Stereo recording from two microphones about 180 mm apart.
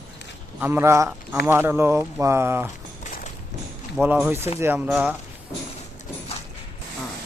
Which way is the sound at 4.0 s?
10° right (ahead or behind).